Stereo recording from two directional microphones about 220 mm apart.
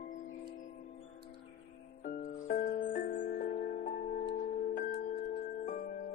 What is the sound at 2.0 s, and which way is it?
Music, 35° left (ahead or behind).